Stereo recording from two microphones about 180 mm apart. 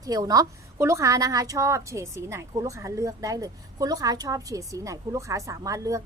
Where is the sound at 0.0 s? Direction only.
20° right (ahead or behind).